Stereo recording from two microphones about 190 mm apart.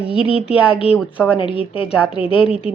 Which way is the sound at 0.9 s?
10° left (ahead or behind).